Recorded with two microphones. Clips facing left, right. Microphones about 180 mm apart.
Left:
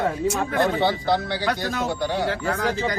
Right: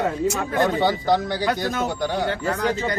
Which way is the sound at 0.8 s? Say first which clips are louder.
Right 2 dB; 15° right (ahead or behind).